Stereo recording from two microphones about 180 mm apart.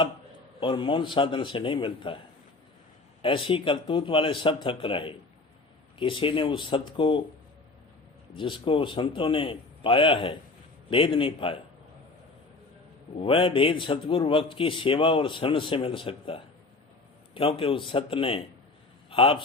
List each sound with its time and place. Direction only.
0.6 s a man's voice: 30° left (ahead or behind)
3.2 s a man's voice: 30° left (ahead or behind)
8.4 s a man's voice: 30° left (ahead or behind)
13.1 s a man's voice: 30° left (ahead or behind)